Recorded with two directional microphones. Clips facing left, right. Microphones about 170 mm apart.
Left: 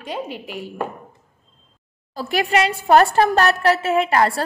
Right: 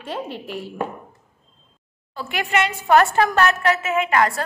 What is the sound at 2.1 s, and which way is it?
A woman's voice, 35° left (ahead or behind).